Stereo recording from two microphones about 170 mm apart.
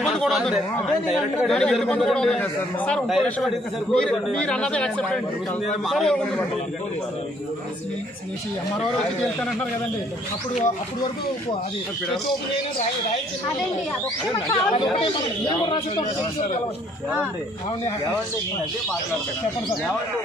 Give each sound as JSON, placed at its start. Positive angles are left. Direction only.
{"t": 0.0, "sound": "a sound", "side_deg": 0}
{"t": 1.0, "sound": "speech", "side_deg": 0}
{"t": 14.5, "sound": "speech", "side_deg": 30}